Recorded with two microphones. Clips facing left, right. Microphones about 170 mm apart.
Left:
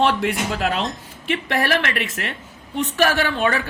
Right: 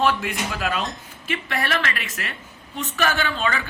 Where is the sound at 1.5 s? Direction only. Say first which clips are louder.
Left 5 dB; 35° left (ahead or behind).